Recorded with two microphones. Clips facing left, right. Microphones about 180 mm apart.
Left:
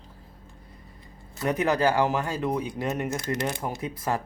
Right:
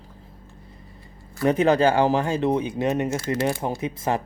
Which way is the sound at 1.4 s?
25° right (ahead or behind).